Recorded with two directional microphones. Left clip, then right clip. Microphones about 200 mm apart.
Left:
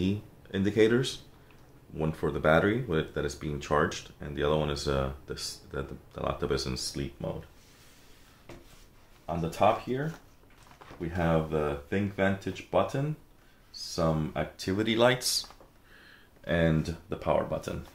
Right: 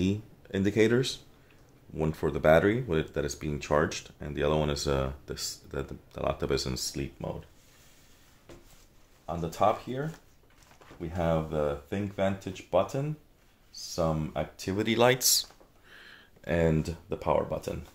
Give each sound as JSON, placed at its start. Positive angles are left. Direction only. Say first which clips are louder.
{"t": 0.0, "sound": "speech", "louder": "right 1 dB", "side_deg": -45}
{"t": 9.2, "sound": "speech", "louder": "left 1 dB", "side_deg": -30}
{"t": 11.0, "sound": "speech", "louder": "left 1 dB", "side_deg": -25}